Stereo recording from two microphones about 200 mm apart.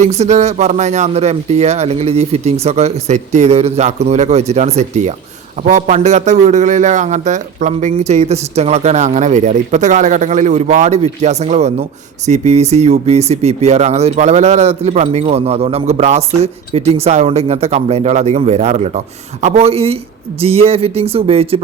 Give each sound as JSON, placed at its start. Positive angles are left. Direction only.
{"t": 0.0, "sound": "a man's voice", "side_deg": -35}